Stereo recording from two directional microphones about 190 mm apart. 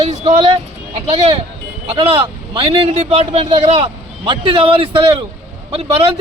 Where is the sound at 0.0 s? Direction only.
30° right (ahead or behind).